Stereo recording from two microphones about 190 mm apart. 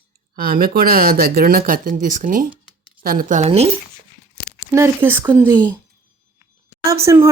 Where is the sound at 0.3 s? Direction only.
50° right (ahead or behind); by 3.7 s 35° right (ahead or behind).